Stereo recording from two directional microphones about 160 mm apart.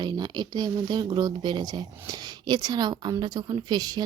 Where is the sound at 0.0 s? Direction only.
25° right (ahead or behind).